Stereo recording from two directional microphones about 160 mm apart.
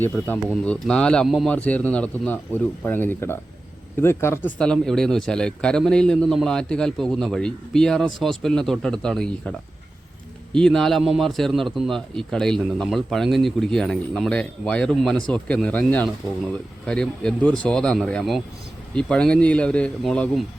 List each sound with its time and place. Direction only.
0.0 s a man's voice: 10° left (ahead or behind)